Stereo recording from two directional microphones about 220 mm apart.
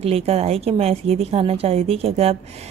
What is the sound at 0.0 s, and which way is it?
A woman's voice, 30° right (ahead or behind).